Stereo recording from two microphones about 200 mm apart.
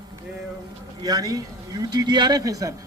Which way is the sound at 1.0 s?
20° right (ahead or behind).